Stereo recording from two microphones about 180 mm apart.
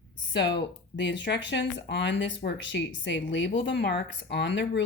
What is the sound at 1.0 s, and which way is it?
A woman's voice, 85° left.